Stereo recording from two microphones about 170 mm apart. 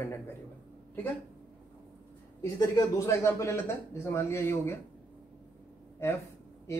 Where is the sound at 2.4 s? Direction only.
20° left (ahead or behind).